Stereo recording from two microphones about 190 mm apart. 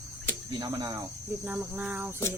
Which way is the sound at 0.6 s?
20° right (ahead or behind).